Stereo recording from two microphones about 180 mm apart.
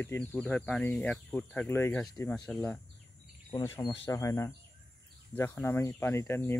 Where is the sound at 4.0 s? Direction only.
15° left (ahead or behind).